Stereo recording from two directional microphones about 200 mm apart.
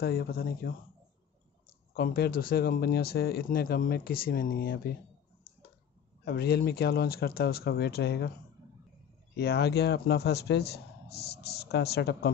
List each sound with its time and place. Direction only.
0.0 s speech: 50° left (ahead or behind)
2.0 s speech: 50° left (ahead or behind)
6.2 s speech: 55° left (ahead or behind)
9.4 s speech: 55° left (ahead or behind)